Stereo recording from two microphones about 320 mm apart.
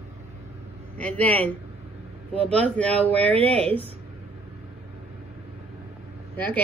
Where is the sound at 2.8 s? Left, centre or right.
Centre.